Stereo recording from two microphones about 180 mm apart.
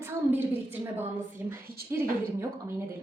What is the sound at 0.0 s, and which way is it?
A woman's voice, 10° right (ahead or behind).